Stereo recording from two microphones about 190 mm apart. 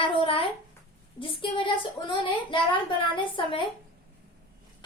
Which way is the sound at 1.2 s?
25° left (ahead or behind).